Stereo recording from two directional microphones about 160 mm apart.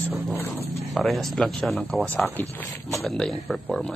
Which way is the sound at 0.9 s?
Centre (ahead or behind).